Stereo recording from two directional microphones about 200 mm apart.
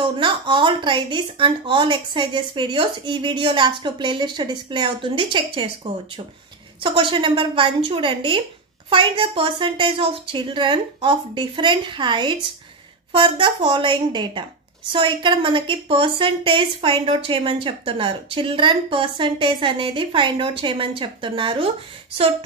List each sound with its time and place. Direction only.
0.2 s a woman's voice: 25° right (ahead or behind)
6.8 s a woman's voice: 25° right (ahead or behind)